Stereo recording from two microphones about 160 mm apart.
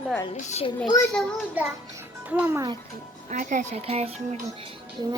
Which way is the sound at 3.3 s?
50° right (ahead or behind).